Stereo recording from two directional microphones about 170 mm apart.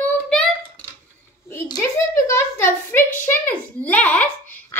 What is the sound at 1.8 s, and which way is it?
A child's voice, 15° left (ahead or behind).